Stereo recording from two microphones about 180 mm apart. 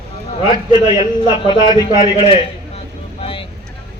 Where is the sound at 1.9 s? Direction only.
25° right (ahead or behind).